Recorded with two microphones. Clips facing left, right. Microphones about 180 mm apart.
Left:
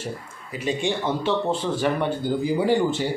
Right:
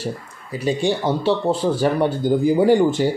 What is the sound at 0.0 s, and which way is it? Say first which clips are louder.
A man's voice: right 5 dB; 35° right (ahead or behind).